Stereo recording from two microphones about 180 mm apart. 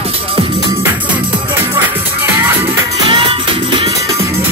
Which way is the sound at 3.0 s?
30° right (ahead or behind).